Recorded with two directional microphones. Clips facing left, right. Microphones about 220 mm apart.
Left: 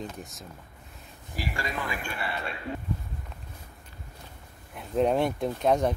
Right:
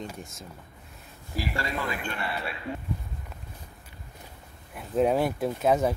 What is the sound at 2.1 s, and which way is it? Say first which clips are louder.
Speech: right 1 dB; centre (ahead or behind).